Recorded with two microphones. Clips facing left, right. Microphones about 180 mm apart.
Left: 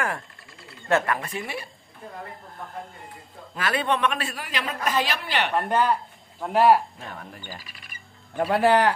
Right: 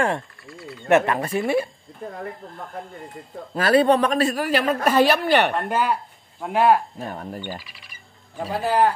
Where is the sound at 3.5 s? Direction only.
40° right (ahead or behind); by 5.5 s 55° right (ahead or behind).